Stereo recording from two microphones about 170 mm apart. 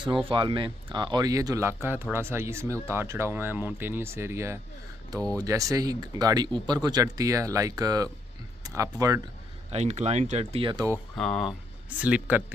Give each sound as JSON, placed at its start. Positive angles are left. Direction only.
{"t": 0.0, "sound": "speech", "side_deg": -30}
{"t": 9.7, "sound": "speech", "side_deg": -40}
{"t": 11.1, "sound": "speech", "side_deg": 5}
{"t": 12.0, "sound": "speech", "side_deg": -10}